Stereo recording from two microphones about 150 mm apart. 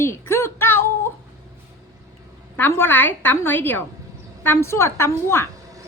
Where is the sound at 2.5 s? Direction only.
15° left (ahead or behind).